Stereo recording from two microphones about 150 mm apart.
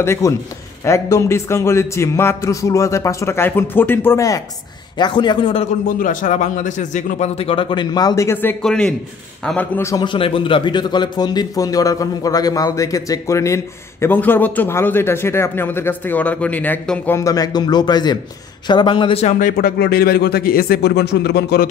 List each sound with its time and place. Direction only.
0.0 s speech: 15° left (ahead or behind)
4.9 s a man's voice: 30° left (ahead or behind)
5.9 s a man's voice: 60° left (ahead or behind); by 9.7 s 5° left (ahead or behind)
9.8 s a man's voice: 20° left (ahead or behind)
10.0 s a man's voice: 35° left (ahead or behind); by 17.2 s 10° left (ahead or behind)
17.2 s a man's voice: 25° left (ahead or behind)
19.5 s speech: 90° left